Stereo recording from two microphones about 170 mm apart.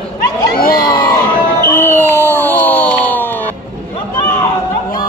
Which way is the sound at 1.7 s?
15° left (ahead or behind).